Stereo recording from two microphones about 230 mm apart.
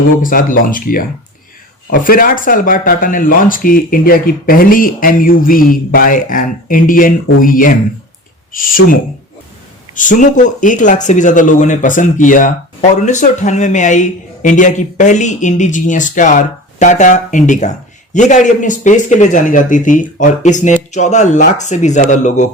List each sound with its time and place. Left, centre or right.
0.2 s speech: left